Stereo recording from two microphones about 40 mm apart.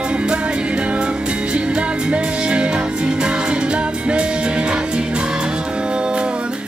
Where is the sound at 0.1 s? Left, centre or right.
Right.